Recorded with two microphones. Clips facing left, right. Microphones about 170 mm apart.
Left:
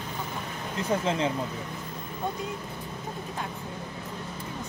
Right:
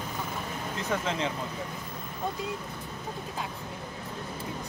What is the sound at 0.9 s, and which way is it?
Speech, 30° left (ahead or behind).